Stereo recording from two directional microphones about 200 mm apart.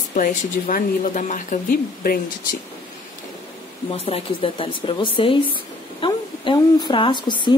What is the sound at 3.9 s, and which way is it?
Speech, 30° left (ahead or behind).